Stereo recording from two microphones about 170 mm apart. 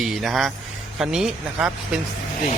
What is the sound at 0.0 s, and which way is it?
Speech, centre (ahead or behind).